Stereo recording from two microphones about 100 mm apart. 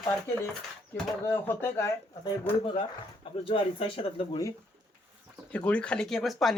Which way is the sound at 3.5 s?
65° left (ahead or behind).